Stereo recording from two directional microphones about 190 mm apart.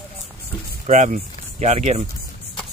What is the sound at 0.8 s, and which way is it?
Speech, 40° right (ahead or behind).